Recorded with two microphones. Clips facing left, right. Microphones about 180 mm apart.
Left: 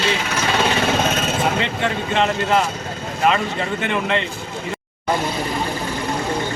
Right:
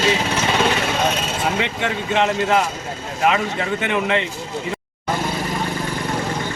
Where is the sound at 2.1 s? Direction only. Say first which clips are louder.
Right 1 dB; 15° right (ahead or behind).